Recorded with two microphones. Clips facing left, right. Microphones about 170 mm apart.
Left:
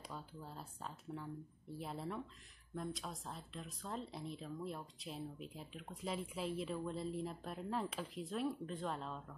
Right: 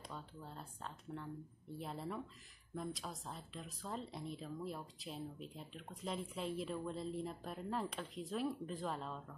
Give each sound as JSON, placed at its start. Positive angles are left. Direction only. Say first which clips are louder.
{"t": 0.1, "sound": "speech", "louder": "left 1 dB", "side_deg": 5}